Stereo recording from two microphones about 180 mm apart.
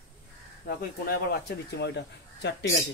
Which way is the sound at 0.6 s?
55° left (ahead or behind).